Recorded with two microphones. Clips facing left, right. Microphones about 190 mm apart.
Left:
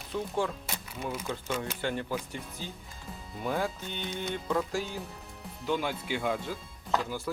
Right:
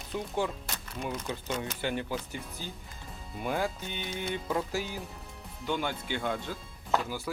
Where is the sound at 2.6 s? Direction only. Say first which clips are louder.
Left 1 dB; 5° right (ahead or behind).